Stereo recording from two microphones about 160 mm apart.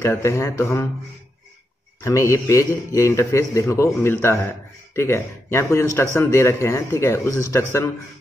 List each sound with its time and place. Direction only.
0.0 s a man's voice: 15° left (ahead or behind)
2.0 s a man's voice: 20° left (ahead or behind)